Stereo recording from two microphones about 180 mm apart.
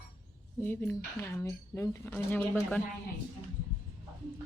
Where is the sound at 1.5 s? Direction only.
15° left (ahead or behind).